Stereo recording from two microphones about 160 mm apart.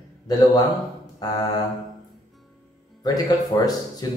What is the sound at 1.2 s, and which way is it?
Speech, 25° left (ahead or behind).